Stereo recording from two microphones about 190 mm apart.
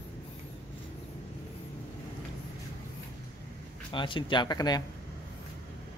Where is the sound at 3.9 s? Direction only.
25° left (ahead or behind).